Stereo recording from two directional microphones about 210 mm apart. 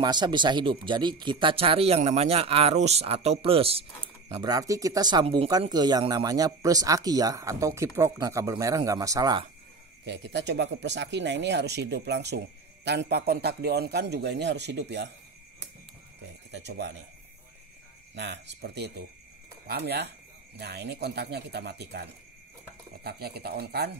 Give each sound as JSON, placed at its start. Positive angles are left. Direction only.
{"t": 0.0, "sound": "speech", "side_deg": -20}
{"t": 10.0, "sound": "speech", "side_deg": -55}
{"t": 16.5, "sound": "speech", "side_deg": -55}
{"t": 18.1, "sound": "speech", "side_deg": -55}
{"t": 23.0, "sound": "speech", "side_deg": -50}